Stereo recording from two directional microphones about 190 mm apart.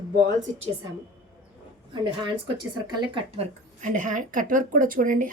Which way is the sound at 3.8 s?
40° right (ahead or behind).